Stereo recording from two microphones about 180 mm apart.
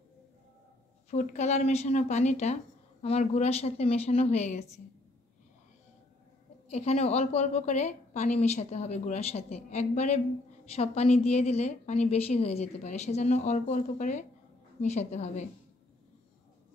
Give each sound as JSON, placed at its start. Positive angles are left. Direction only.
{"t": 1.1, "sound": "a woman's voice", "side_deg": 40}
{"t": 6.7, "sound": "a woman's voice", "side_deg": 35}